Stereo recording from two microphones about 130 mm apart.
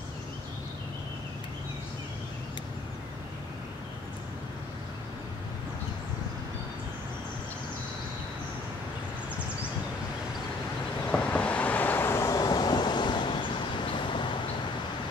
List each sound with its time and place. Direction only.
11.1 s vehicle: 10° left (ahead or behind); by 13.5 s 35° left (ahead or behind)